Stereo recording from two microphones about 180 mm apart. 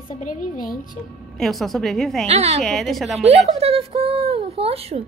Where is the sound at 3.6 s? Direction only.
35° right (ahead or behind).